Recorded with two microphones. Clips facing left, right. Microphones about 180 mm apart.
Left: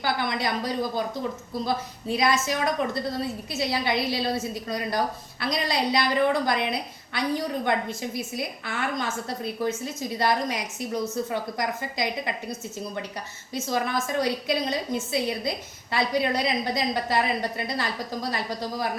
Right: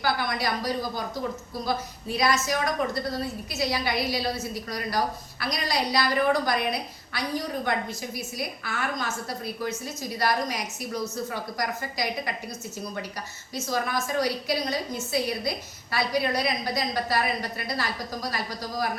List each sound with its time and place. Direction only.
0.0 s a woman's voice: 25° left (ahead or behind)
13.5 s a woman's voice: 25° left (ahead or behind)